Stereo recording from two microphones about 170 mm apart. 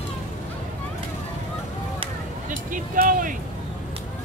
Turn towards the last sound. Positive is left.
turn(degrees=-55)  # may be behind; listen again after turning